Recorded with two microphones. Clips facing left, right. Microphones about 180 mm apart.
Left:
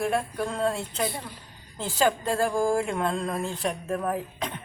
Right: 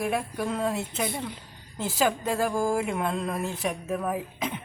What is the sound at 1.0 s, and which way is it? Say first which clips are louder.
Speech: even; 20° right (ahead or behind).